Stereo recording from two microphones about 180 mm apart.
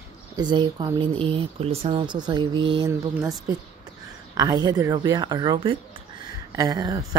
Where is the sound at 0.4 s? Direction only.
25° right (ahead or behind).